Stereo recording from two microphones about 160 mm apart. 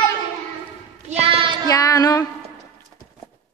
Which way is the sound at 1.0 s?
35° right (ahead or behind).